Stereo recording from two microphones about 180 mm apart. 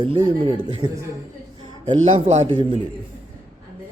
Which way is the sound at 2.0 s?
40° right (ahead or behind).